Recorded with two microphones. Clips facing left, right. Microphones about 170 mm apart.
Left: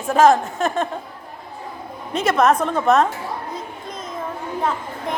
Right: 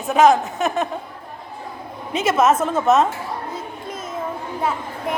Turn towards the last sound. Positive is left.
turn(degrees=-5)  # may be behind; listen again after turning